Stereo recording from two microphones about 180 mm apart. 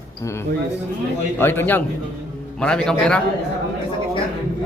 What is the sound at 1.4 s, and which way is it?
A man's voice, 10° left (ahead or behind).